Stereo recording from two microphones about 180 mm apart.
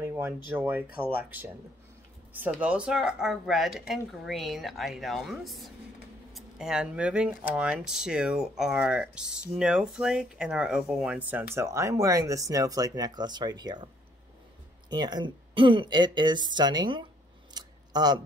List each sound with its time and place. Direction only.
0.0 s a sound: 15° right (ahead or behind)
0.5 s speech: 10° right (ahead or behind)
14.9 s speech: 25° right (ahead or behind)
17.6 s scissors: 20° right (ahead or behind)